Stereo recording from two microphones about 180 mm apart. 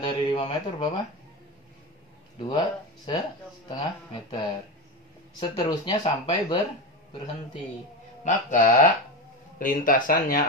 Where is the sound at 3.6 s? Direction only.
30° left (ahead or behind).